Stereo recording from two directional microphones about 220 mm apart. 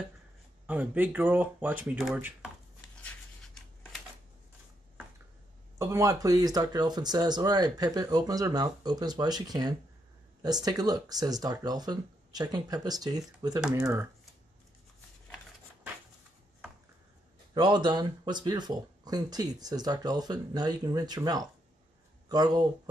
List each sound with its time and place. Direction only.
0.7 s speech: 5° right (ahead or behind)
3.0 s a sound: 5° left (ahead or behind)
5.8 s speech: 15° right (ahead or behind)
13.6 s speech: 5° right (ahead or behind)
17.6 s speech: 20° right (ahead or behind)